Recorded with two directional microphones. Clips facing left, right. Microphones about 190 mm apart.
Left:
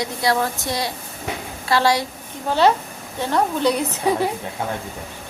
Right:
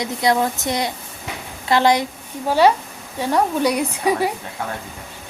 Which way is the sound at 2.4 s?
10° right (ahead or behind).